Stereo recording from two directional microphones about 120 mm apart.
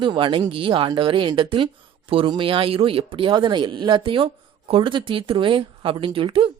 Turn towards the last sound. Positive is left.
turn(degrees=-45)  # may be behind; listen again after turning